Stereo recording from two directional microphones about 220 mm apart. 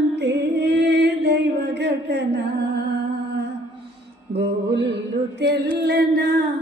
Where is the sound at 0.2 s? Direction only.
50° right (ahead or behind).